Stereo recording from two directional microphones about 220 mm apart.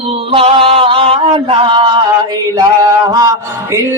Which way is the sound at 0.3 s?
25° right (ahead or behind).